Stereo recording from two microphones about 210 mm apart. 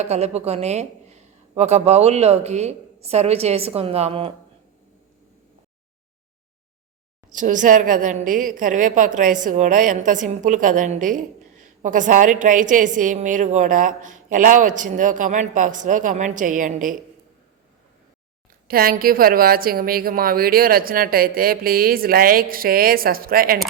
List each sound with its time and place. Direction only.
0.0 s a woman's voice: 30° right (ahead or behind)
7.3 s a woman's voice: 40° right (ahead or behind)
18.7 s a woman's voice: 45° right (ahead or behind)